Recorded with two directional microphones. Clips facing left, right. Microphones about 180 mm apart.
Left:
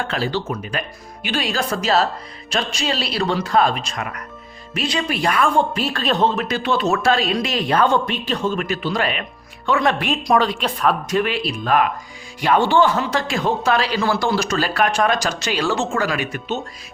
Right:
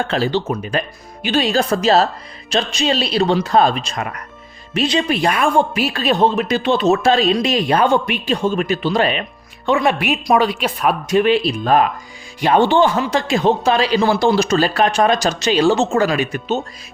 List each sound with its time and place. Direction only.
0.1 s speech: 25° right (ahead or behind)
9.6 s speech: 15° right (ahead or behind)
11.2 s speech: 25° right (ahead or behind)